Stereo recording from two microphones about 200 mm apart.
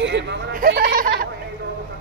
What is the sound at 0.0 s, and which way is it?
Speech, 60° right (ahead or behind).